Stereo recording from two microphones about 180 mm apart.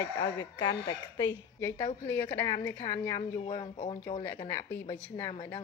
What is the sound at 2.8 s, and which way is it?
Speech, 15° left (ahead or behind).